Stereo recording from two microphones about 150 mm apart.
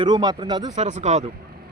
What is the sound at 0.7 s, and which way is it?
Speech, 55° right (ahead or behind).